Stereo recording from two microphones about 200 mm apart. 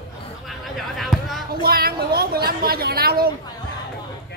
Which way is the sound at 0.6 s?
Centre (ahead or behind).